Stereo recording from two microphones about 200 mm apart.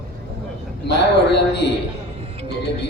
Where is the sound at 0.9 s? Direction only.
60° left (ahead or behind).